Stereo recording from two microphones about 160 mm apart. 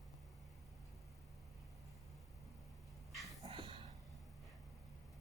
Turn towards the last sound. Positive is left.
turn(degrees=-35)  # may be behind; listen again after turning